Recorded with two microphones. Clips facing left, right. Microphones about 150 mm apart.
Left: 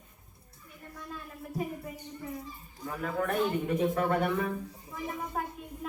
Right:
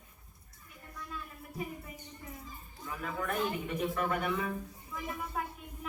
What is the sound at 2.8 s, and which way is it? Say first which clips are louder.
Speech: left 5 dB; 45° left (ahead or behind).